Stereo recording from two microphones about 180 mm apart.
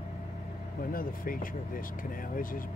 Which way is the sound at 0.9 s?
50° left (ahead or behind).